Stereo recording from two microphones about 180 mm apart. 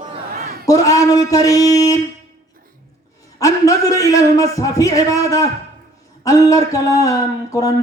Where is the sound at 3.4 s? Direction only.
20° left (ahead or behind).